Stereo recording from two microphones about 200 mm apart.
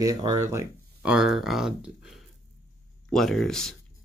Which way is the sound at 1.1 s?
Centre (ahead or behind).